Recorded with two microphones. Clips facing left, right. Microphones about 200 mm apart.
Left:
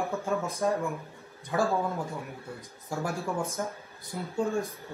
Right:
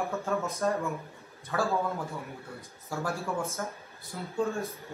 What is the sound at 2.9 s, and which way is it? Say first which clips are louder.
A man's voice: left 1 dB; 15° left (ahead or behind).